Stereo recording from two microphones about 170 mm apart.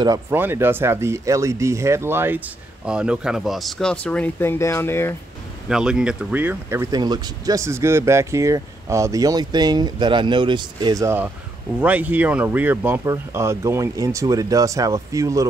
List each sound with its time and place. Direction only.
0.0 s speech: 15° right (ahead or behind); by 5.1 s 15° left (ahead or behind)
5.7 s speech: 5° right (ahead or behind)